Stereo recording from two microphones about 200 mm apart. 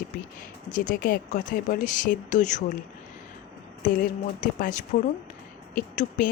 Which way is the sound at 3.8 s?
45° left (ahead or behind).